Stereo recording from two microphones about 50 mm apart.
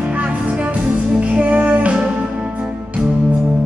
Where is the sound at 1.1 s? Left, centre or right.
Right.